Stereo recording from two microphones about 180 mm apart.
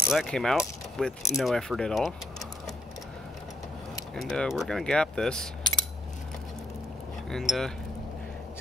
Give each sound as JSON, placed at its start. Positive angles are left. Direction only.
{"t": 0.1, "sound": "speech", "side_deg": 0}
{"t": 4.1, "sound": "speech", "side_deg": 0}
{"t": 5.6, "sound": "a sound", "side_deg": 25}
{"t": 7.2, "sound": "speech", "side_deg": 0}